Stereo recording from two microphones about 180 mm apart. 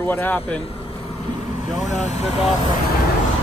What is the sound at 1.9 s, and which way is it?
Speech, 40° left (ahead or behind).